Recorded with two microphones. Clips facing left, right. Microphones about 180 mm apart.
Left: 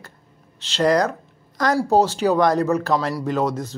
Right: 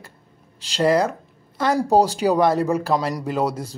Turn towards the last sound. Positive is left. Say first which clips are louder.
# left 1 dB
turn(degrees=-10)  # may be behind; listen again after turning